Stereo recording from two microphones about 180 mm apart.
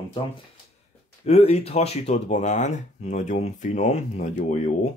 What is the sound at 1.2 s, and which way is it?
Speech, 35° left (ahead or behind).